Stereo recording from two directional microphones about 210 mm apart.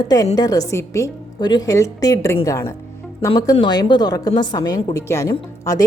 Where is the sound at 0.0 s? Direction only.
15° left (ahead or behind).